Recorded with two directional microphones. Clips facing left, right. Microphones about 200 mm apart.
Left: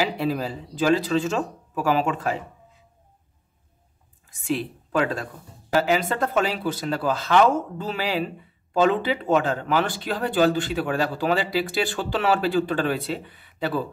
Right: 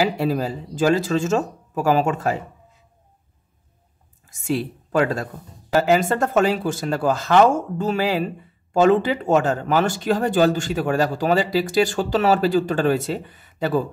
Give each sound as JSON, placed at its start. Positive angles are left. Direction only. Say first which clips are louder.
{"t": 0.0, "sound": "speech", "louder": "right 4 dB", "side_deg": -45}
{"t": 4.3, "sound": "speech", "louder": "right 3 dB", "side_deg": -40}